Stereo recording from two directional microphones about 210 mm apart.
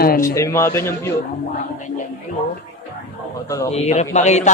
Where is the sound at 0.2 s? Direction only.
15° left (ahead or behind).